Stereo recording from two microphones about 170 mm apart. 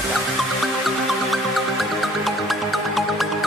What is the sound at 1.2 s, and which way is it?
Music, centre (ahead or behind).